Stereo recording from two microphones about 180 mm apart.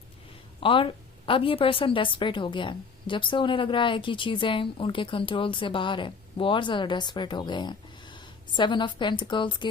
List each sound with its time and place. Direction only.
0.6 s a woman's voice: 30° left (ahead or behind)